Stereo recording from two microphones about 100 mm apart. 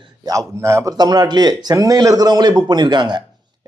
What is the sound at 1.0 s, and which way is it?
Speech, 45° right (ahead or behind).